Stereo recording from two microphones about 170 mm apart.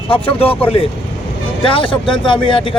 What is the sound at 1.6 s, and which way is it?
Speech, 30° left (ahead or behind).